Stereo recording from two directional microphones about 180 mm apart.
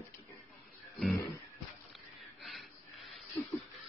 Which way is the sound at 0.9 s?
Centre (ahead or behind).